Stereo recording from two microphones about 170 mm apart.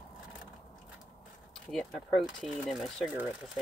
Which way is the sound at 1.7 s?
Centre (ahead or behind).